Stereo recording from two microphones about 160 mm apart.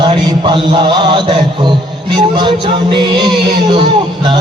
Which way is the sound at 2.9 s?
30° right (ahead or behind).